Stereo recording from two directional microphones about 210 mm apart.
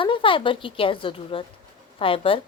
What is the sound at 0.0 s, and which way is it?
A woman's voice, 25° left (ahead or behind).